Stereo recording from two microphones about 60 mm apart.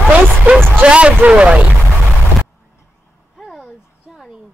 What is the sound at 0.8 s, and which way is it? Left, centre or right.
Speech, centre.